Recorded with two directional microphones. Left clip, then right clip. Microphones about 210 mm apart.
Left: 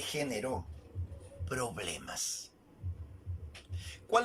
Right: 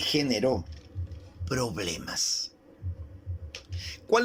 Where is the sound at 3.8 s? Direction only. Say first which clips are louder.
Right 5 dB; 40° right (ahead or behind).